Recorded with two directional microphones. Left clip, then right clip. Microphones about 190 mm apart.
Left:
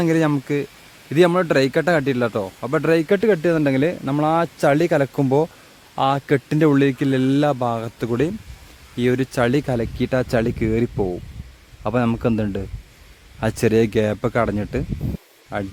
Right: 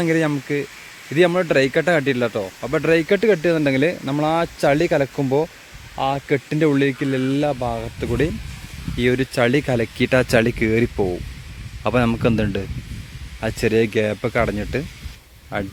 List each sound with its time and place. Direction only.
0.0 s speech: 10° left (ahead or behind)
9.0 s speech: centre (ahead or behind)
13.4 s speech: 10° left (ahead or behind)